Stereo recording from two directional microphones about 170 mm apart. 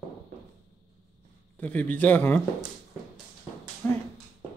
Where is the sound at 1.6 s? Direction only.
10° left (ahead or behind).